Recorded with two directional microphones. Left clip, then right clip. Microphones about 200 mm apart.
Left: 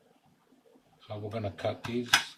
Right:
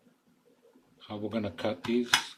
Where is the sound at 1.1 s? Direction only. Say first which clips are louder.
Right 2 dB; 50° right (ahead or behind).